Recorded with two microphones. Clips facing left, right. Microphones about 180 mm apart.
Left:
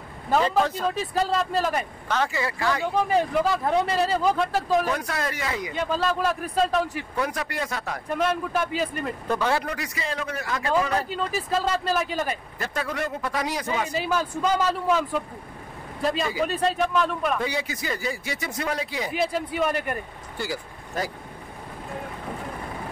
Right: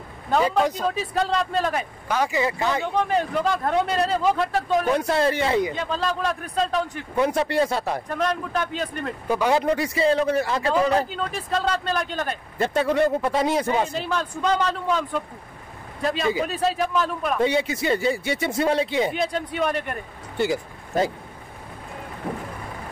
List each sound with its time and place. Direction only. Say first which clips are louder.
0.7 s speech: right 1 dB; centre (ahead or behind); by 2.9 s 20° right (ahead or behind)
3.0 s speech: left 1 dB; 5° left (ahead or behind)
4.9 s speech: right 8 dB; 30° right (ahead or behind)
5.8 s speech: left 1 dB; centre (ahead or behind)
7.2 s speech: right 8 dB; 25° right (ahead or behind)
8.2 s speech: left 2 dB; 5° left (ahead or behind)
9.3 s speech: right 5 dB; 15° right (ahead or behind)
11.1 s speech: left 1 dB; centre (ahead or behind)
12.5 s speech: right 12 dB; 25° right (ahead or behind)
13.9 s speech: left 1 dB; 5° left (ahead or behind)
17.4 s speech: right 7 dB; 25° right (ahead or behind)
19.1 s speech: even; 5° left (ahead or behind)
20.3 s speech: right 8 dB; 20° right (ahead or behind)